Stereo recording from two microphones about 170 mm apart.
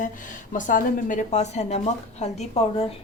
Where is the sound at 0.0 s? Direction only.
50° left (ahead or behind).